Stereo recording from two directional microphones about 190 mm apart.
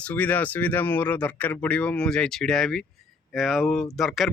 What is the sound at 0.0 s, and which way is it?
Speech, 5° left (ahead or behind).